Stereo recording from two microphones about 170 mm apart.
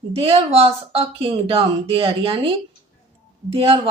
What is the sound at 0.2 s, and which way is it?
Speech, 35° right (ahead or behind).